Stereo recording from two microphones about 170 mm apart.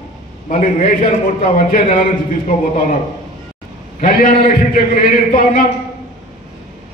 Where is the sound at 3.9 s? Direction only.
55° left (ahead or behind).